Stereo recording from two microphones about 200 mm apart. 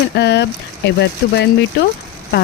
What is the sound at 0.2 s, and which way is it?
Speech, 55° left (ahead or behind).